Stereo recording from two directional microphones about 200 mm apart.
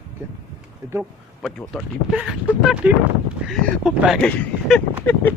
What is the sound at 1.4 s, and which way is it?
Speech, centre (ahead or behind).